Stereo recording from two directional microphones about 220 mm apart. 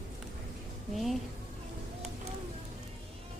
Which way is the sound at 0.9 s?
Centre (ahead or behind).